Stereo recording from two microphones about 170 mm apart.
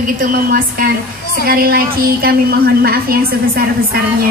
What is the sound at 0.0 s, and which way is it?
A woman's voice, 55° right (ahead or behind).